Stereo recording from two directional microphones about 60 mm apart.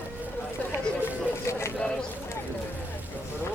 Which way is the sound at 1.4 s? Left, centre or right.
Left.